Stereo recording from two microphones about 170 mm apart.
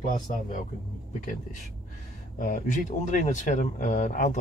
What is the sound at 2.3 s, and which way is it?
Speech, 50° left (ahead or behind).